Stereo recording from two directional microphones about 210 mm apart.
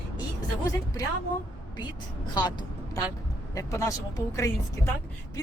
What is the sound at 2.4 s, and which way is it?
Speech, 20° left (ahead or behind).